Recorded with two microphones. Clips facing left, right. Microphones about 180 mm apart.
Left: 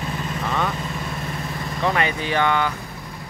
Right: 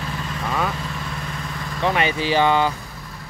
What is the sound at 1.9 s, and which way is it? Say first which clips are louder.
Speech: right 2 dB; 25° right (ahead or behind).